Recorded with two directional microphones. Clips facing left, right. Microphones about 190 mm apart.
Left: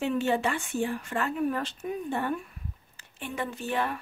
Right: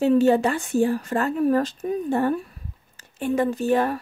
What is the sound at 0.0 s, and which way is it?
A woman's voice, 40° right (ahead or behind).